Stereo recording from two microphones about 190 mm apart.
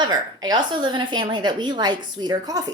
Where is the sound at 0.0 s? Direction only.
20° right (ahead or behind).